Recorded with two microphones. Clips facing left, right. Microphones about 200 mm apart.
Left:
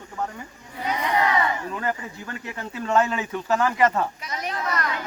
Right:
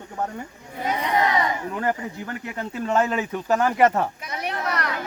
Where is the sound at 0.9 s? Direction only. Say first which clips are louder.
Even; 20° right (ahead or behind).